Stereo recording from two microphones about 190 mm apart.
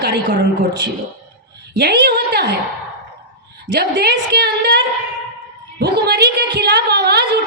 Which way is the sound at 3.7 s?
60° right (ahead or behind).